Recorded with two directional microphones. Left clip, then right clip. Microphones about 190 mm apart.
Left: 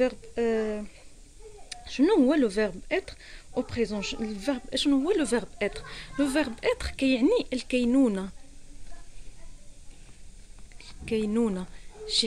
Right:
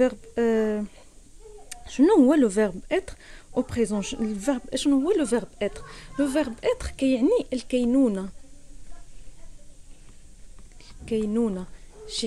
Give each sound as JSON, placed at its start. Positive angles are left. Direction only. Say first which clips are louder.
{"t": 0.0, "sound": "speech", "louder": "right 3 dB", "side_deg": -20}
{"t": 11.1, "sound": "speech", "louder": "right 2 dB", "side_deg": -10}